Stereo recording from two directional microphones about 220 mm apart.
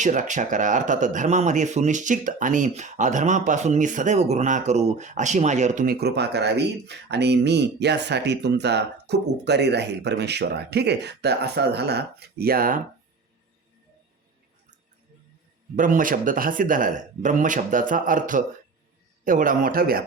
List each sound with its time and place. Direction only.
0.0 s speech: 35° right (ahead or behind)
15.7 s speech: 35° right (ahead or behind)